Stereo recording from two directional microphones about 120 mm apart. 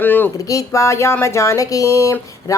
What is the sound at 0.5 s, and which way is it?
Speech, 25° left (ahead or behind).